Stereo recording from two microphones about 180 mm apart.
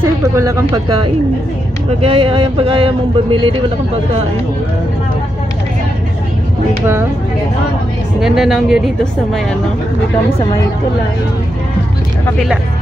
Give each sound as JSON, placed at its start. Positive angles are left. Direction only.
{"t": 0.0, "sound": "speech", "side_deg": -15}
{"t": 2.0, "sound": "a man's voice", "side_deg": -30}
{"t": 8.2, "sound": "speech", "side_deg": 0}